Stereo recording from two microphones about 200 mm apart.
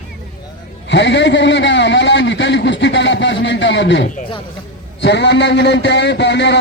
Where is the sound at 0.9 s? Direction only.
60° left (ahead or behind).